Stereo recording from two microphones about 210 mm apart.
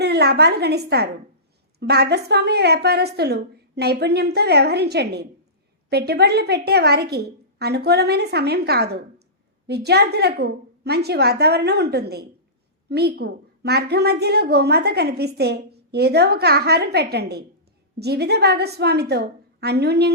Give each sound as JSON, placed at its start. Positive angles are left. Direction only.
{"t": 0.0, "sound": "a woman's voice", "side_deg": -50}